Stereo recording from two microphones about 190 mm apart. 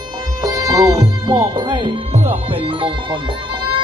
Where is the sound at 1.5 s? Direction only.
25° right (ahead or behind).